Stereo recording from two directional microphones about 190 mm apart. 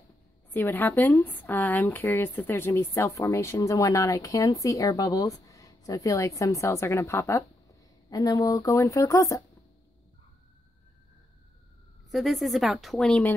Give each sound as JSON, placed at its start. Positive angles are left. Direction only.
{"t": 0.5, "sound": "speech", "side_deg": 10}
{"t": 12.1, "sound": "a woman's voice", "side_deg": 0}